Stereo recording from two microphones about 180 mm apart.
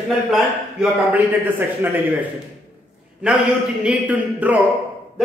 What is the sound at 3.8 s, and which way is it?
Speech, 10° right (ahead or behind).